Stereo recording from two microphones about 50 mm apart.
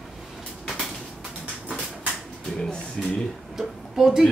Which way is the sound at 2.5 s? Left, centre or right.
Centre.